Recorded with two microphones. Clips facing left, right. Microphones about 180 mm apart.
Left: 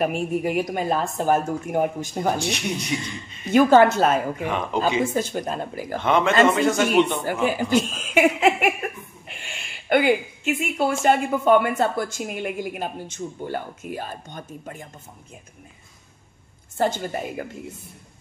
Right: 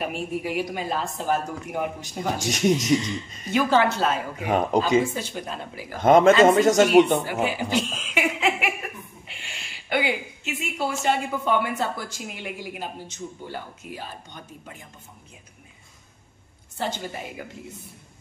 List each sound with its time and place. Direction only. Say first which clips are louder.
0.0 s a woman's voice: left 6 dB; 50° left (ahead or behind)
2.4 s a man's voice: right 5 dB; 45° right (ahead or behind)
3.5 s a woman's voice: left 6 dB; 50° left (ahead or behind)
4.5 s a man's voice: right 5 dB; 40° right (ahead or behind)
5.1 s a woman's voice: left 7 dB; 45° left (ahead or behind)
5.9 s a man's voice: right 4 dB; 45° right (ahead or behind)
7.4 s a woman's voice: left 4 dB; 45° left (ahead or behind)
16.7 s a woman's voice: left 6 dB; 50° left (ahead or behind)